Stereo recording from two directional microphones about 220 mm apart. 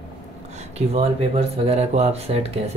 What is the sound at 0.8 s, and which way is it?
Speech, 30° right (ahead or behind).